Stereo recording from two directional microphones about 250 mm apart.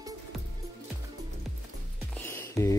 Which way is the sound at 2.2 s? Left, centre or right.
Centre.